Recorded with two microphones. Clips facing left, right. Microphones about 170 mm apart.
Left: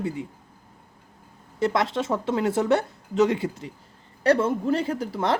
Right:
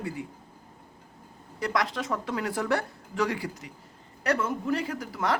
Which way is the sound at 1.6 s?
25° left (ahead or behind).